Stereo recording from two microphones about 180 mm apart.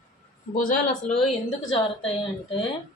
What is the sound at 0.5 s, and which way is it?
Speech, 45° left (ahead or behind).